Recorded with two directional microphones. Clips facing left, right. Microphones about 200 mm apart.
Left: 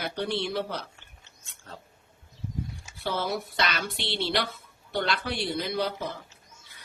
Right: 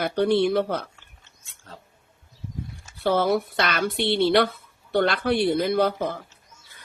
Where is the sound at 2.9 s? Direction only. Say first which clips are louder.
Right 9 dB; 55° right (ahead or behind).